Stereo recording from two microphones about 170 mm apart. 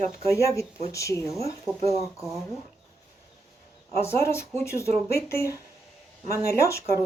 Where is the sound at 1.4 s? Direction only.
35° right (ahead or behind).